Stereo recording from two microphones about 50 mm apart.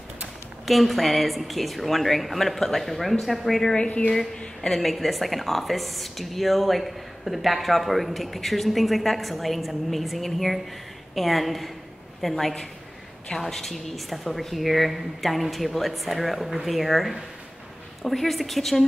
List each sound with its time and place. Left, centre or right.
0.7 s a woman's voice: centre
3.7 s a woman's voice: left
4.6 s a woman's voice: centre